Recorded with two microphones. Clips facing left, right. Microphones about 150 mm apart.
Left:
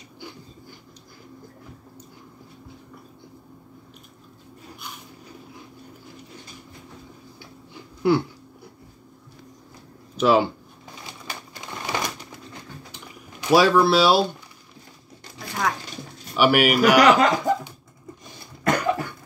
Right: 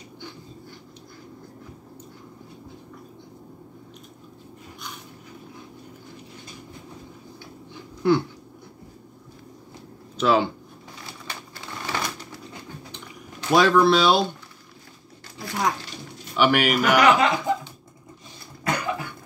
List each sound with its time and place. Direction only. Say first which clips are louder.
8.0 s a sound: even; 10° left (ahead or behind)
10.1 s speech: left 2 dB; 10° left (ahead or behind)
11.1 s typewriter: left 1 dB; 15° left (ahead or behind)
13.4 s speech: left 1 dB; 10° left (ahead or behind)
16.3 s speech: left 2 dB; 10° left (ahead or behind)
16.9 s speech: even; 40° left (ahead or behind)
18.6 s cough: left 5 dB; 50° left (ahead or behind)